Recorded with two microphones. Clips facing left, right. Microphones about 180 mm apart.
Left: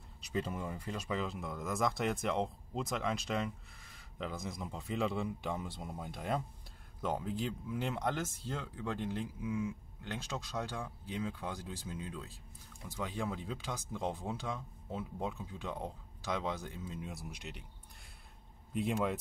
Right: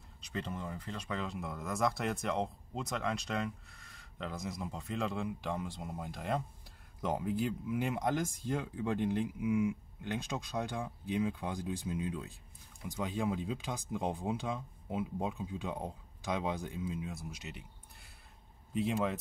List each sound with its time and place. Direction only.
0.2 s speech: 5° left (ahead or behind)
7.0 s speech: 10° right (ahead or behind)
17.0 s speech: centre (ahead or behind)
18.7 s speech: centre (ahead or behind)